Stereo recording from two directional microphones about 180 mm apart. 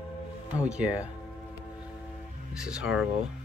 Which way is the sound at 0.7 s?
5° right (ahead or behind).